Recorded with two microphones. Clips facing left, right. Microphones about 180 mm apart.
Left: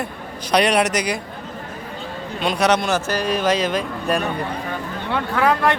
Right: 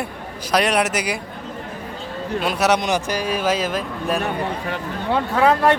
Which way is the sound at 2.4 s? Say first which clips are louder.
Left 1 dB; 5° right (ahead or behind).